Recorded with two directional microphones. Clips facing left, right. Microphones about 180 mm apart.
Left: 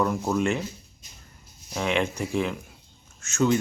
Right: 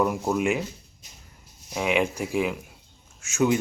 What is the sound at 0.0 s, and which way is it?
Speech, 10° right (ahead or behind).